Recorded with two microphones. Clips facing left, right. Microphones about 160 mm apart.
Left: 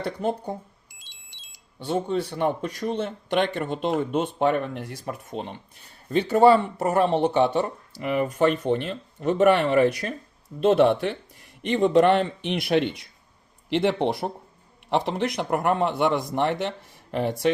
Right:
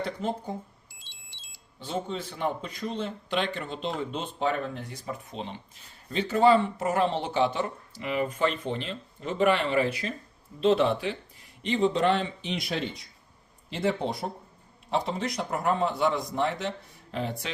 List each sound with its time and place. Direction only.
0.9 s music: 15° left (ahead or behind)
1.8 s speech: 60° left (ahead or behind)
6.7 s a woman's voice: 40° left (ahead or behind)
7.1 s speech: 55° left (ahead or behind)
8.5 s speech: 65° left (ahead or behind); by 10.2 s 50° left (ahead or behind)
10.7 s speech: 60° left (ahead or behind)